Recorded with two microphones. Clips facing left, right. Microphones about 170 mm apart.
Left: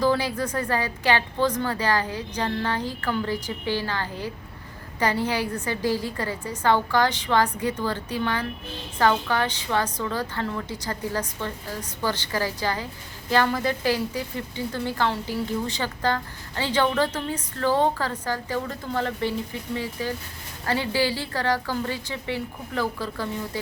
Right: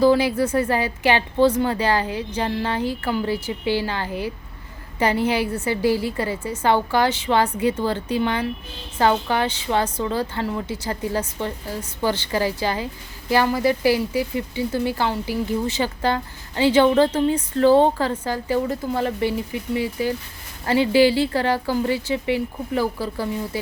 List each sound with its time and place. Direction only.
0.0 s a woman's voice: 15° right (ahead or behind)